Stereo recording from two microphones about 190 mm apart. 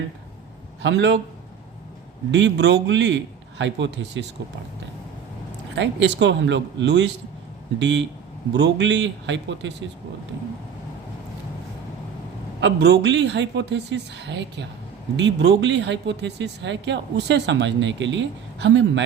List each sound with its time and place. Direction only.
0.8 s speech: 70° right (ahead or behind)
2.3 s a man's voice: 65° right (ahead or behind)
5.7 s speech: 65° right (ahead or behind)
12.5 s a man's voice: 65° right (ahead or behind)